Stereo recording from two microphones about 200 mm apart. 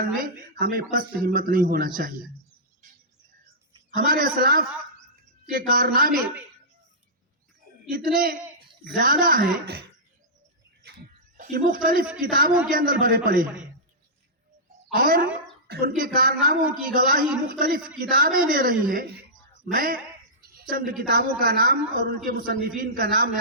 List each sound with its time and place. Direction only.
0.0 s speech: 45° right (ahead or behind)
3.9 s speech: 45° right (ahead or behind)
7.9 s a man's voice: 45° right (ahead or behind)
11.3 s speech: 40° right (ahead or behind)
14.9 s speech: 45° right (ahead or behind)